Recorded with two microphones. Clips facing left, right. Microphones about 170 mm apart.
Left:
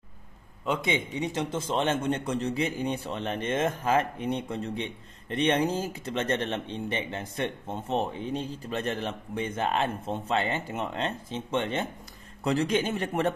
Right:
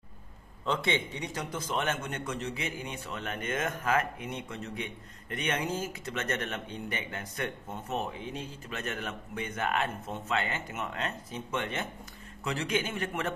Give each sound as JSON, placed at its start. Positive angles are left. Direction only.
{"t": 0.7, "sound": "a man's voice", "side_deg": 15}